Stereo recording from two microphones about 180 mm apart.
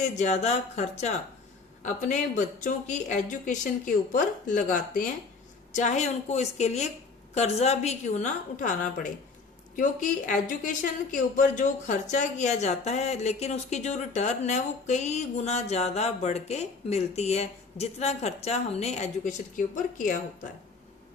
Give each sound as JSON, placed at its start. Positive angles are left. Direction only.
{"t": 0.0, "sound": "speech", "side_deg": 40}